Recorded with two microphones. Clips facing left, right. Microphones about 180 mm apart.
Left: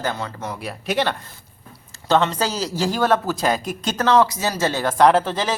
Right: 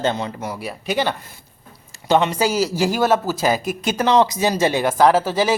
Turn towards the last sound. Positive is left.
turn(degrees=-10)  # may be behind; listen again after turning